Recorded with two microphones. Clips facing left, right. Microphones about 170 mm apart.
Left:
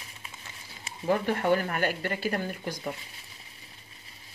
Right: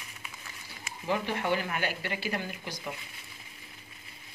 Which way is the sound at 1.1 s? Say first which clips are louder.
Left 5 dB; 45° left (ahead or behind).